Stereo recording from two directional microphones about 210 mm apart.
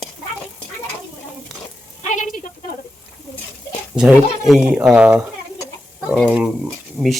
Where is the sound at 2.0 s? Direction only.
35° left (ahead or behind).